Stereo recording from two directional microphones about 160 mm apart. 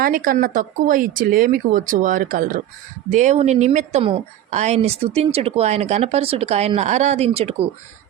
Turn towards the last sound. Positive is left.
turn(degrees=-40)  # may be behind; listen again after turning